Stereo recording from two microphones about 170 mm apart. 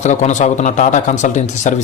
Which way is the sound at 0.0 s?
45° left (ahead or behind).